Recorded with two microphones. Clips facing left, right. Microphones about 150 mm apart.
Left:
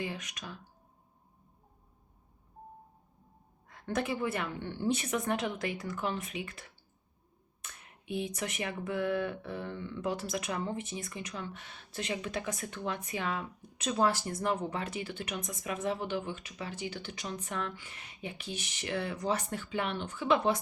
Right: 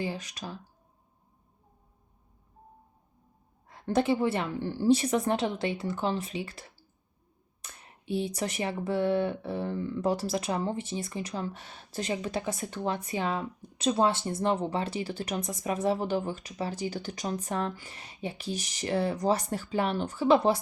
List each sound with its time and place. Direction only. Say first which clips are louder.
0.0 s speech: right 4 dB; 30° right (ahead or behind)
3.7 s speech: right 7 dB; 30° right (ahead or behind)